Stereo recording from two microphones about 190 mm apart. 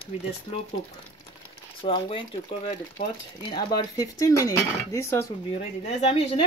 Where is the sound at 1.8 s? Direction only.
25° left (ahead or behind).